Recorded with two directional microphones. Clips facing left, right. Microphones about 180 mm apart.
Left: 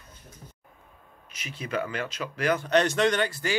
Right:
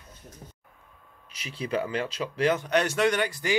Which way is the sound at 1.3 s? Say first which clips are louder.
Right 3 dB; 30° right (ahead or behind).